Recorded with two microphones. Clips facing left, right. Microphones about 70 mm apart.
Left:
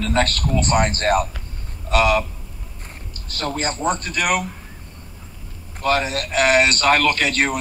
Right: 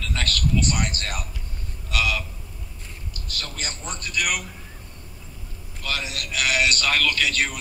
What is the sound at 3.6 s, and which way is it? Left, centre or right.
Speech, left.